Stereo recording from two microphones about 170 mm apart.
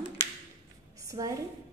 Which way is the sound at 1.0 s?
20° right (ahead or behind).